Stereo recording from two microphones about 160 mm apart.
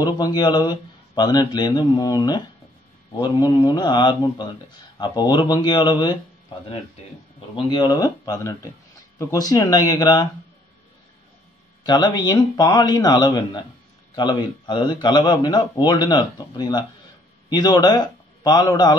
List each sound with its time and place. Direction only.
0.0 s speech: 25° left (ahead or behind)
7.3 s speech: 30° left (ahead or behind)
11.8 s a man's voice: 25° left (ahead or behind)